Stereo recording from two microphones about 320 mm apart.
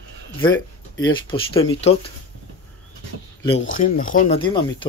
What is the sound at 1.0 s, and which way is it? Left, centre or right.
Speech, centre.